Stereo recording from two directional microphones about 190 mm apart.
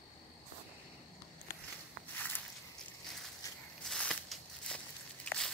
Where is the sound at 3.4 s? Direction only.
15° left (ahead or behind).